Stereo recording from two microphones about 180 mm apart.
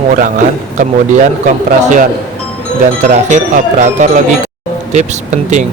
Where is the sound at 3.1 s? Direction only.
45° right (ahead or behind).